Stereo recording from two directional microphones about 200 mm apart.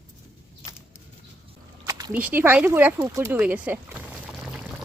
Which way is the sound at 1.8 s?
15° right (ahead or behind).